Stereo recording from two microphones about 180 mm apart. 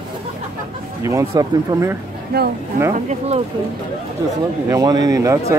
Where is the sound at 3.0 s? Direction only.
35° right (ahead or behind).